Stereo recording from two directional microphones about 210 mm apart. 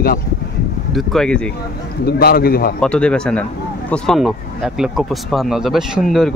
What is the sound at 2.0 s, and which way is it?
Speech, 50° left (ahead or behind).